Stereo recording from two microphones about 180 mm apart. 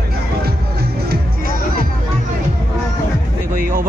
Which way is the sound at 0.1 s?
60° right (ahead or behind).